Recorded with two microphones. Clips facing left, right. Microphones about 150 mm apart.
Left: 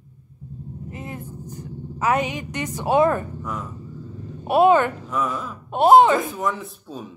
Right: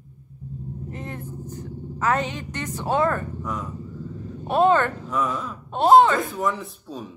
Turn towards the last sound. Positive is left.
turn(degrees=0)  # may be behind; listen again after turning